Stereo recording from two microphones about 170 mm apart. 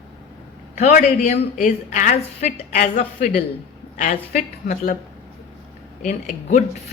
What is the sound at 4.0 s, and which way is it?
A woman's voice, 50° left (ahead or behind).